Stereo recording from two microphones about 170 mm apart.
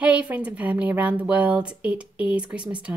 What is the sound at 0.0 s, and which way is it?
Speech, 10° right (ahead or behind).